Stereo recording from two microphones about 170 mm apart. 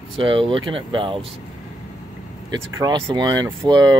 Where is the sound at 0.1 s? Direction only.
30° right (ahead or behind).